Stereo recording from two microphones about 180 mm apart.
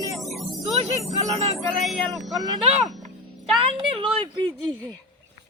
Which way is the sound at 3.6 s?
30° right (ahead or behind).